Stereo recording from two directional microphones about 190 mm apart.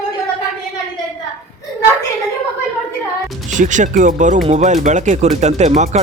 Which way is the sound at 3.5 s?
40° right (ahead or behind).